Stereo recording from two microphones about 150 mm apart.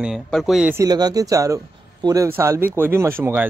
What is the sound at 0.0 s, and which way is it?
Speech, centre (ahead or behind).